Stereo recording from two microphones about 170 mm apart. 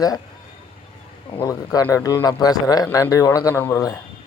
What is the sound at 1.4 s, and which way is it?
Speech, 15° left (ahead or behind).